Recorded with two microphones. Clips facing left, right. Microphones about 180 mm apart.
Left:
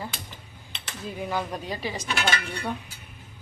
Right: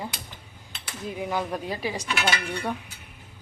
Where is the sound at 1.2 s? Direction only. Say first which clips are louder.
Right 1 dB; 10° right (ahead or behind).